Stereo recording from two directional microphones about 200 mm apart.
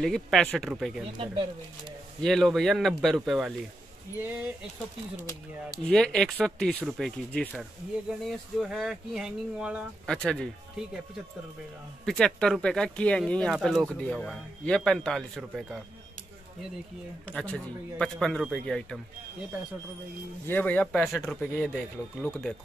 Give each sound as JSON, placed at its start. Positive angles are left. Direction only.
{"t": 0.0, "sound": "speech", "side_deg": 0}
{"t": 1.1, "sound": "speech", "side_deg": -25}
{"t": 2.2, "sound": "speech", "side_deg": 0}
{"t": 5.9, "sound": "speech", "side_deg": 5}
{"t": 12.1, "sound": "speech", "side_deg": 5}
{"t": 17.3, "sound": "speech", "side_deg": 5}
{"t": 20.4, "sound": "speech", "side_deg": 10}